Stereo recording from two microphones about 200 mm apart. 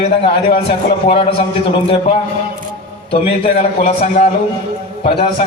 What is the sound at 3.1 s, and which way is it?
A man's voice, 30° left (ahead or behind).